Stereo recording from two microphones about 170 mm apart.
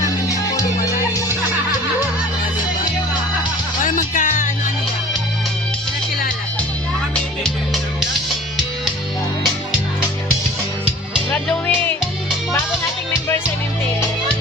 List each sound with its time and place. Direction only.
3.8 s music: 50° left (ahead or behind)
7.1 s music: 5° left (ahead or behind)
11.3 s music: 10° left (ahead or behind)